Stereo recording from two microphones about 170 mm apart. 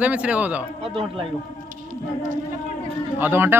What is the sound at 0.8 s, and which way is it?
Speech, 30° right (ahead or behind).